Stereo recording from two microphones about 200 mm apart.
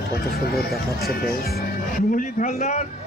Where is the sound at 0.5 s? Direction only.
50° left (ahead or behind).